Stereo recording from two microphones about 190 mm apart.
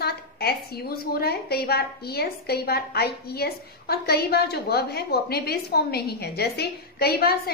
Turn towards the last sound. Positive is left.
turn(degrees=55)  # may be behind; listen again after turning